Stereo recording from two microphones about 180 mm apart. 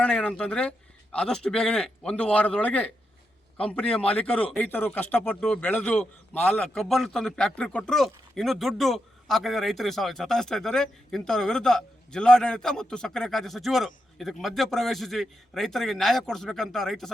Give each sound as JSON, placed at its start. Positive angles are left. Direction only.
{"t": 0.0, "sound": "speech", "side_deg": 5}